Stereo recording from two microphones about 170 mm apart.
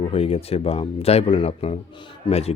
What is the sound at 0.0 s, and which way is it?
Speech, 35° left (ahead or behind).